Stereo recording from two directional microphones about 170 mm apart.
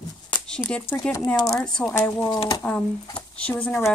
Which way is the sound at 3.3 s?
5° left (ahead or behind).